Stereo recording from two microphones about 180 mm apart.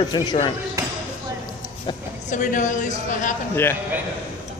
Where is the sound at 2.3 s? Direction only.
45° left (ahead or behind).